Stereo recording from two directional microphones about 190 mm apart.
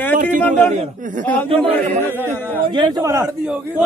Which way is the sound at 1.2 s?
10° left (ahead or behind).